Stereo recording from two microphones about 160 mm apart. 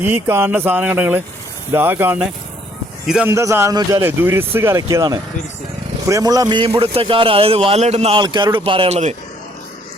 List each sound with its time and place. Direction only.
0.1 s a man's voice: 15° right (ahead or behind); by 8.2 s 40° right (ahead or behind)
8.2 s a man's voice: 25° right (ahead or behind); by 9.1 s 45° right (ahead or behind)